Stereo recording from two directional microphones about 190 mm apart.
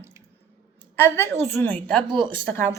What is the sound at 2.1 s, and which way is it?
Speech, 25° right (ahead or behind).